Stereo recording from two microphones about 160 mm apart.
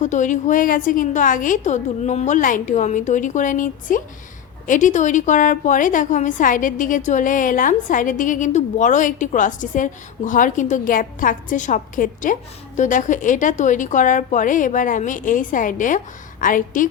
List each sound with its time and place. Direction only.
0.0 s a woman's voice: 50° left (ahead or behind)